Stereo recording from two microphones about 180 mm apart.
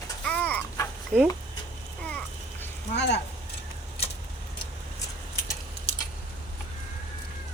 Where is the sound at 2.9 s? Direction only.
70° left (ahead or behind).